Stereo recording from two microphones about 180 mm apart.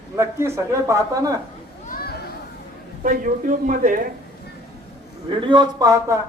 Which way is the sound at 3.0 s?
50° right (ahead or behind).